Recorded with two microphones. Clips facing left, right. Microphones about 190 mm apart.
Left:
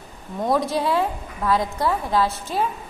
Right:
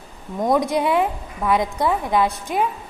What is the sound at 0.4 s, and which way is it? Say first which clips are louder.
A woman's voice: right 3 dB; 15° right (ahead or behind).